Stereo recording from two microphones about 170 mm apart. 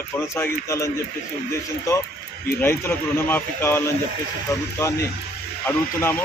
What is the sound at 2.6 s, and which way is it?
Speech, 15° left (ahead or behind).